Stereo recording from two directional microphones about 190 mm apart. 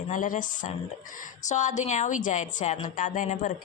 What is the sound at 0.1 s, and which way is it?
A woman's voice, 45° left (ahead or behind).